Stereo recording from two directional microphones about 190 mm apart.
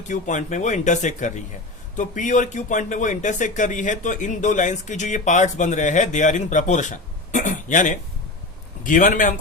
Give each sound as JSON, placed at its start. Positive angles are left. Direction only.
{"t": 0.1, "sound": "a man's voice", "side_deg": 40}